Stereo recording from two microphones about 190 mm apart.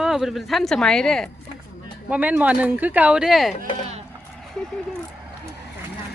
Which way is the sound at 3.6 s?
35° right (ahead or behind).